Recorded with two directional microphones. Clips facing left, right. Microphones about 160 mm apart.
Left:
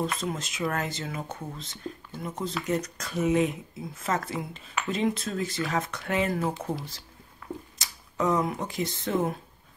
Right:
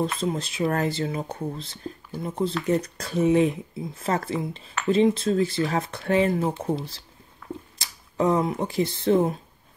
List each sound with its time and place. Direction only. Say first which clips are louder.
0.0 s speech: right 4 dB; 30° right (ahead or behind)